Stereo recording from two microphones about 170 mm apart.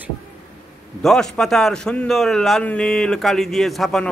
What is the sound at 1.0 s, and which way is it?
A man's voice, centre (ahead or behind).